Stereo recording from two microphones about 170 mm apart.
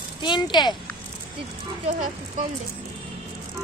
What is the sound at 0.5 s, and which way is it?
Speech, 25° left (ahead or behind).